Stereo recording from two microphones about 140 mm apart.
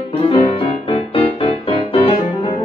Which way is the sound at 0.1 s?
40° left (ahead or behind).